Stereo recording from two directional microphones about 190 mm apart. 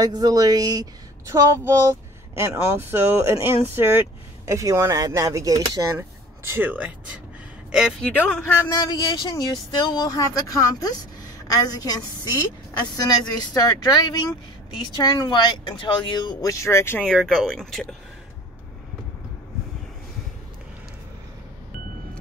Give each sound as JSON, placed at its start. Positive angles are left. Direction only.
{"t": 0.0, "sound": "a woman's voice", "side_deg": -20}
{"t": 8.1, "sound": "a man's voice", "side_deg": 10}
{"t": 17.1, "sound": "speech", "side_deg": 0}